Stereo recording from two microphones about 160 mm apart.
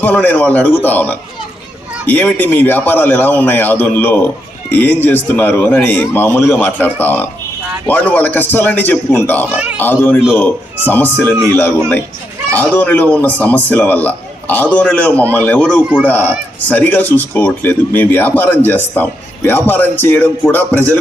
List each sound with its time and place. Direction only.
0.0 s speech: 10° left (ahead or behind)